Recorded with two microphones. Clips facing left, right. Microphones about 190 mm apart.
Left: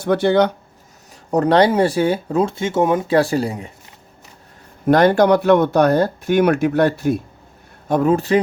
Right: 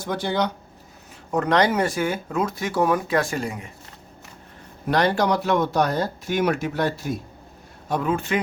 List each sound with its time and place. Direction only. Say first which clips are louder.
0.0 s speech: left 9 dB; 65° left (ahead or behind)
1.3 s speech: left 6 dB; 35° left (ahead or behind)
4.9 s speech: left 8 dB; 50° left (ahead or behind)
7.9 s speech: left 8 dB; 45° left (ahead or behind)